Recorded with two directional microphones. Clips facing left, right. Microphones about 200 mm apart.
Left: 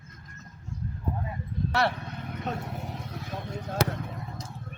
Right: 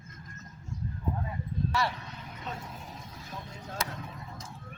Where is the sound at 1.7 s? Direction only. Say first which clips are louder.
Left 8 dB; 60° left (ahead or behind).